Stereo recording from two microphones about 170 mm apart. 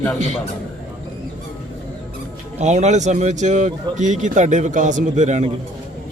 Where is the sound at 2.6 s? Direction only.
45° right (ahead or behind).